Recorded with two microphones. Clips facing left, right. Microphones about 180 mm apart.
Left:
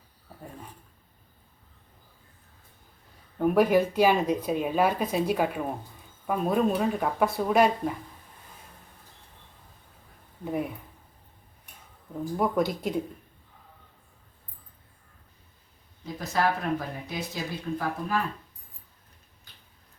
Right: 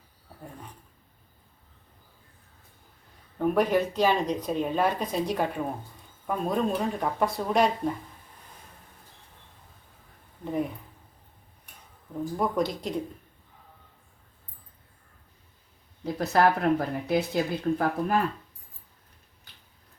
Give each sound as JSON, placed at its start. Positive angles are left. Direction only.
{"t": 3.3, "sound": "speech", "side_deg": 5}
{"t": 10.4, "sound": "speech", "side_deg": 5}
{"t": 12.4, "sound": "speech", "side_deg": 5}
{"t": 16.1, "sound": "speech", "side_deg": -60}